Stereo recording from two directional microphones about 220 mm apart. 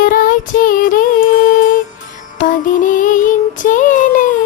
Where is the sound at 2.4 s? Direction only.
35° left (ahead or behind).